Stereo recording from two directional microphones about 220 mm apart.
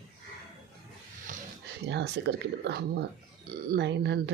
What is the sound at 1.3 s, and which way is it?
Sniff, 35° right (ahead or behind).